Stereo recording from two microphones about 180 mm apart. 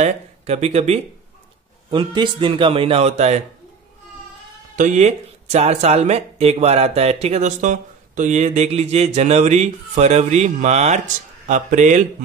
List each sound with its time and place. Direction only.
0.0 s speech: 35° right (ahead or behind)
4.7 s speech: 40° right (ahead or behind)